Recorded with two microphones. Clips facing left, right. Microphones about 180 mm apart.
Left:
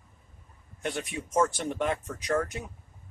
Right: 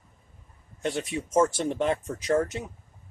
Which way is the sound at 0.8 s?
25° right (ahead or behind).